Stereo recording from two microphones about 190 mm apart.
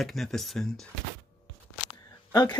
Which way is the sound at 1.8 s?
20° left (ahead or behind).